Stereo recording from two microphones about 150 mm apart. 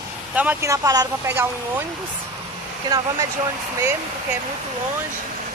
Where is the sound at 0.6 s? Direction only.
20° right (ahead or behind).